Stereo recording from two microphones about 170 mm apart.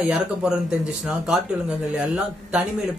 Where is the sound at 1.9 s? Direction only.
5° right (ahead or behind).